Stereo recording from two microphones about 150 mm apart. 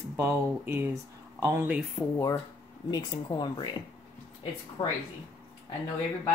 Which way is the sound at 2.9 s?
30° left (ahead or behind).